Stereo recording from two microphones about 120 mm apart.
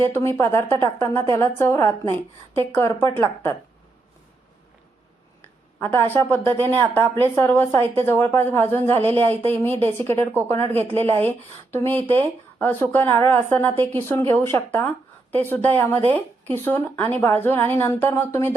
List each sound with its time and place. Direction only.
0.1 s a woman's voice: 20° left (ahead or behind)
5.4 s a sound: 20° left (ahead or behind)
6.5 s speech: 15° left (ahead or behind)